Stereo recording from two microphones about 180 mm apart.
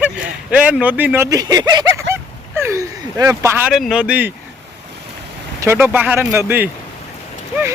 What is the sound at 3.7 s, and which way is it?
Speech, centre (ahead or behind).